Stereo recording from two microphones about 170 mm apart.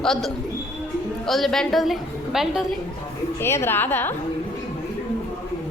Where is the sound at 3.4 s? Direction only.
15° left (ahead or behind).